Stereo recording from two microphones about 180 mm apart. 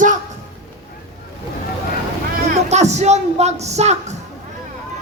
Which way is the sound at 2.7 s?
40° right (ahead or behind).